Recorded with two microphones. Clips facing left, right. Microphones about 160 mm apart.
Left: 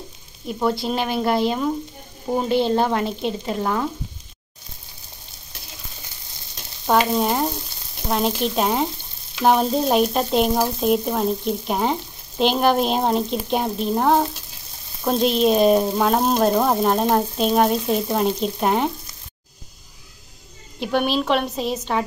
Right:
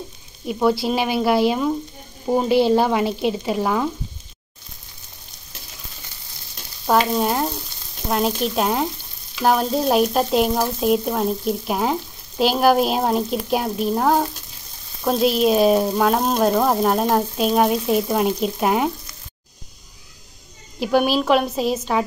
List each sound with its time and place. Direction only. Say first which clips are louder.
0.5 s frying: right 3 dB; 5° right (ahead or behind)
2.2 s speech: right 3 dB; 5° right (ahead or behind)
7.1 s frying: even; centre (ahead or behind)
20.8 s frying: right 3 dB; 5° right (ahead or behind)